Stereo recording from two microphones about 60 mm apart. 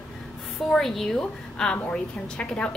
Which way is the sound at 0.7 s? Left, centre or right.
Centre.